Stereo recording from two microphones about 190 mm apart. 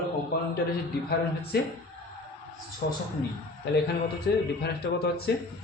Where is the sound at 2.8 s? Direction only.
55° left (ahead or behind).